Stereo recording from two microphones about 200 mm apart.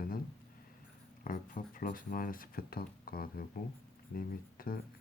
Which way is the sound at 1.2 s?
45° left (ahead or behind).